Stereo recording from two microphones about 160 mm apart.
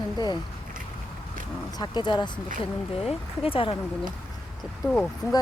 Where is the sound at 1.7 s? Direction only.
25° left (ahead or behind).